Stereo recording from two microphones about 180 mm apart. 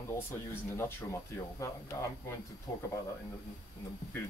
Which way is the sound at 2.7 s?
10° left (ahead or behind).